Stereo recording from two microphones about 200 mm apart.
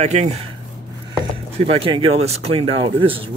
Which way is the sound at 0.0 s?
35° right (ahead or behind).